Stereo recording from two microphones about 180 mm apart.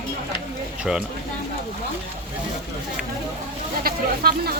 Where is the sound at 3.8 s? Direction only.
60° right (ahead or behind).